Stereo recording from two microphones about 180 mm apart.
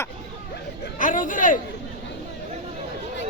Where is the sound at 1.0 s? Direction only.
45° left (ahead or behind).